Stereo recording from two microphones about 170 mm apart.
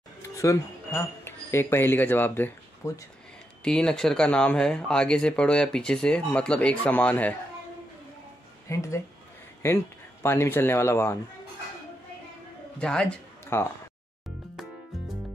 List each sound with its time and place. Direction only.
0.4 s speech: 15° left (ahead or behind)
8.7 s speech: 15° left (ahead or behind)
10.2 s speech: 15° left (ahead or behind)
12.7 s a man's voice: 5° left (ahead or behind)